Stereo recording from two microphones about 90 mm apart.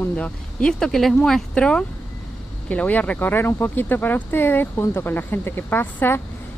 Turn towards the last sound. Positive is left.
turn(degrees=25)  # may be behind; listen again after turning